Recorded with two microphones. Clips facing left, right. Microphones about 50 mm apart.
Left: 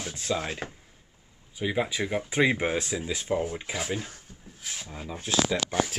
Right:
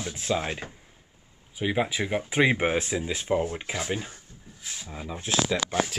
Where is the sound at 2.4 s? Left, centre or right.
Right.